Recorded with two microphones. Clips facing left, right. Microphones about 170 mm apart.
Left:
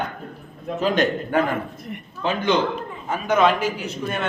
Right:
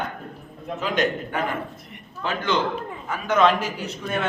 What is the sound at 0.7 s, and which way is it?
Speech, 30° left (ahead or behind).